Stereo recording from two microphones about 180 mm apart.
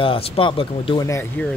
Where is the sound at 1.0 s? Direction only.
15° left (ahead or behind).